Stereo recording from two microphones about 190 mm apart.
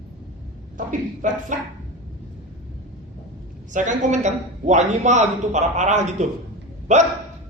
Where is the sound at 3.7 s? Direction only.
40° right (ahead or behind).